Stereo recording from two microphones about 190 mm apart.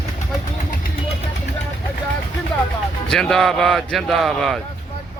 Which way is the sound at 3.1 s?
5° left (ahead or behind).